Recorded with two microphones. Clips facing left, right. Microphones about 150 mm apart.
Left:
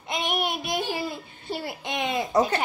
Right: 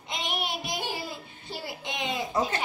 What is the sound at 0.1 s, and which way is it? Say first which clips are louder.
Child singing: left 5 dB; 55° left (ahead or behind).